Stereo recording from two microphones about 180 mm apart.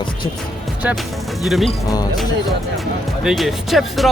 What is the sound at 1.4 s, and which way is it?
Speech, centre (ahead or behind).